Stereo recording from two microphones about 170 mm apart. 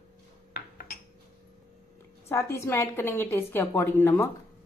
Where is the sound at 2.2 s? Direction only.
15° left (ahead or behind).